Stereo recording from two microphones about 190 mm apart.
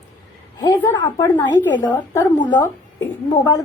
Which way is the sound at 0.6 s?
20° left (ahead or behind).